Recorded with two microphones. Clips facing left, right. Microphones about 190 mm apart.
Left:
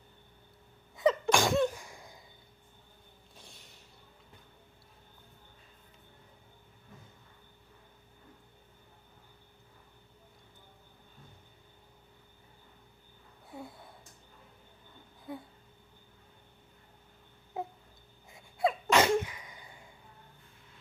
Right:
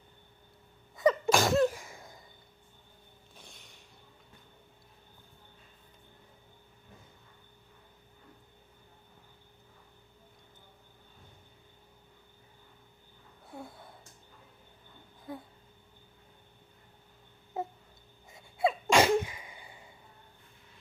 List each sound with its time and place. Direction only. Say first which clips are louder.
0.9 s sneeze: right 1 dB; 5° right (ahead or behind)
13.5 s gasp: even; centre (ahead or behind)
15.3 s a sound: even; centre (ahead or behind)
17.5 s a sound: right 2 dB; centre (ahead or behind)
18.3 s gasp: right 1 dB; centre (ahead or behind)
18.9 s sneeze: right 2 dB; 10° right (ahead or behind)
19.1 s cough: right 1 dB; 25° right (ahead or behind)